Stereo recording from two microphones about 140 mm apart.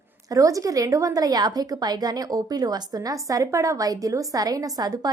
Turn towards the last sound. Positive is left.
turn(degrees=-25)  # may be behind; listen again after turning